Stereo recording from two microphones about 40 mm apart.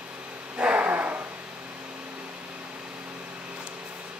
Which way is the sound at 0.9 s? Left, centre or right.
Right.